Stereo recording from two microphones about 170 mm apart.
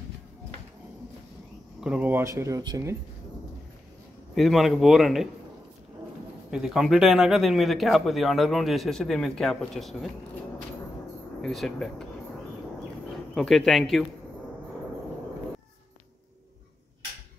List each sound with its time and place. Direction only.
1.8 s speech: 5° right (ahead or behind)
4.4 s speech: centre (ahead or behind)
6.5 s speech: 5° right (ahead or behind)
11.4 s speech: centre (ahead or behind)
13.1 s speech: centre (ahead or behind)